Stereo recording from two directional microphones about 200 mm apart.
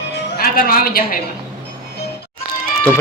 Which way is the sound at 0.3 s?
45° left (ahead or behind).